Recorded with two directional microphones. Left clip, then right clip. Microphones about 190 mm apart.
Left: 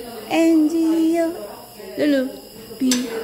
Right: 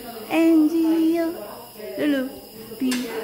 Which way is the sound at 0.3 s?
10° left (ahead or behind).